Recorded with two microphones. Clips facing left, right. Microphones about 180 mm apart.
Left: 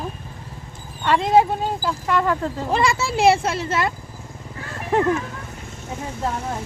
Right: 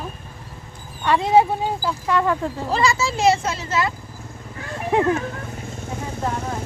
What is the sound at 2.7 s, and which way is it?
Speech, 55° left (ahead or behind).